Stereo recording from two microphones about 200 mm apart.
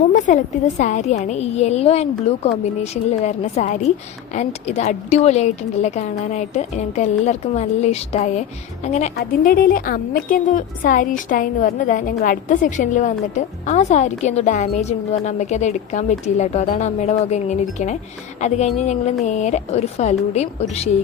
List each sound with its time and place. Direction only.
0.1 s a woman's voice: 40° left (ahead or behind)
9.1 s a woman's voice: 45° left (ahead or behind)